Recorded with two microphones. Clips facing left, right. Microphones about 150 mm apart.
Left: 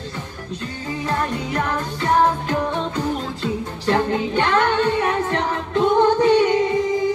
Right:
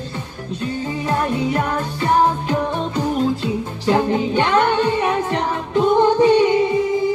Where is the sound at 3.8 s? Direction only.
15° right (ahead or behind).